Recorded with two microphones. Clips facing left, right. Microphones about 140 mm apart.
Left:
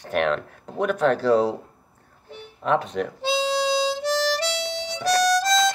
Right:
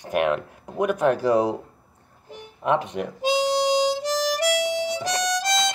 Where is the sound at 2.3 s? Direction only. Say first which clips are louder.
Even; 15° right (ahead or behind).